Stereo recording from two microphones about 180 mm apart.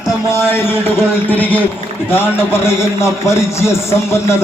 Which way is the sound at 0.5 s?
15° left (ahead or behind).